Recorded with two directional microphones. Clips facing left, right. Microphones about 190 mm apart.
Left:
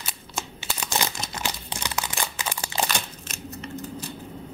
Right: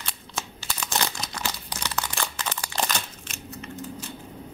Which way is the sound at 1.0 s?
10° left (ahead or behind).